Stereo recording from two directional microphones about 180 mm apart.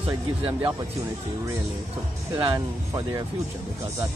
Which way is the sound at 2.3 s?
15° right (ahead or behind).